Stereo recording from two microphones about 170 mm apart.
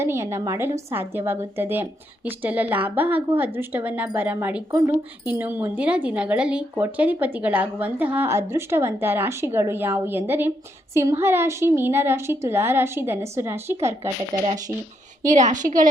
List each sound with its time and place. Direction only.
0.0 s a woman's voice: 15° right (ahead or behind)
15.2 s a woman's voice: 45° right (ahead or behind)